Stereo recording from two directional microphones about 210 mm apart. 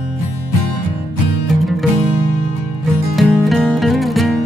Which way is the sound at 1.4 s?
Centre (ahead or behind).